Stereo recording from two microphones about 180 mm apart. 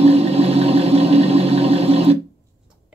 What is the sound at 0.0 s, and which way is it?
Sewing machine, 35° right (ahead or behind).